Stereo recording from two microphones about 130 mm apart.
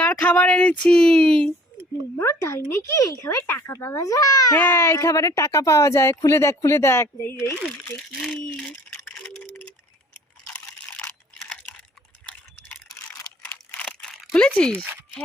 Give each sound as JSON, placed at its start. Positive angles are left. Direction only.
{"t": 0.0, "sound": "speech", "side_deg": 10}
{"t": 2.1, "sound": "a child's voice", "side_deg": 20}
{"t": 4.5, "sound": "a child's voice", "side_deg": 15}
{"t": 8.9, "sound": "a sound", "side_deg": 10}
{"t": 10.4, "sound": "water", "side_deg": 10}
{"t": 13.4, "sound": "computer keyboard", "side_deg": 10}
{"t": 14.3, "sound": "speech", "side_deg": 10}